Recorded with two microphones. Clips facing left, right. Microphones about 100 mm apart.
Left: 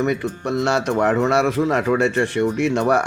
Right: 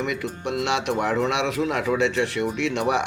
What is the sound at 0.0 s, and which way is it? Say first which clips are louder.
Speech: left 5 dB; 35° left (ahead or behind).